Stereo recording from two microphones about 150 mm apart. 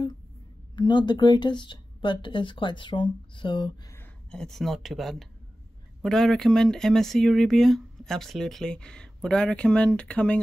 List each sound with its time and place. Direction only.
0.7 s speech: 30° left (ahead or behind)
3.9 s speech: 10° left (ahead or behind)